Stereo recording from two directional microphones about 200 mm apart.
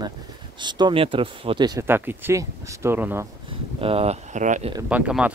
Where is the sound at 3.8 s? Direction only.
30° right (ahead or behind).